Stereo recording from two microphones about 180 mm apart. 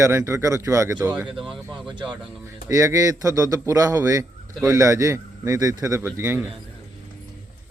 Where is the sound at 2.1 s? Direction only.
15° right (ahead or behind).